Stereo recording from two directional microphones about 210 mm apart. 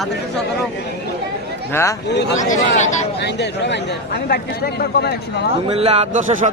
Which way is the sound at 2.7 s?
35° left (ahead or behind).